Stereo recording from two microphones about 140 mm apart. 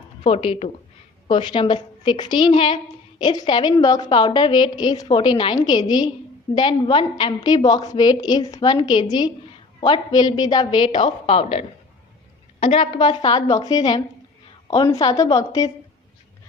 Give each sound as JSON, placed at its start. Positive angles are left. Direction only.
{"t": 0.2, "sound": "speech", "side_deg": 45}
{"t": 1.3, "sound": "a woman's voice", "side_deg": 35}